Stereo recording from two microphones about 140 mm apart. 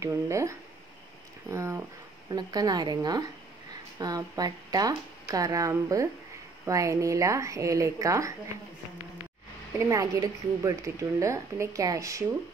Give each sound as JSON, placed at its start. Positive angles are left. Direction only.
{"t": 0.0, "sound": "a woman's voice", "side_deg": -20}
{"t": 9.8, "sound": "a woman's voice", "side_deg": -25}